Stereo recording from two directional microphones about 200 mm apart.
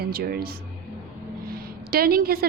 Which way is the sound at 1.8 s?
50° right (ahead or behind).